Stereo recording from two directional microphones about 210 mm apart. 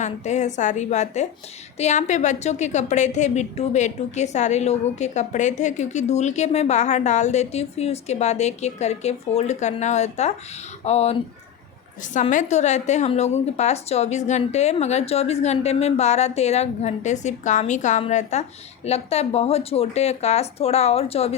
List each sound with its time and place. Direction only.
0.0 s a woman's voice: 35° left (ahead or behind)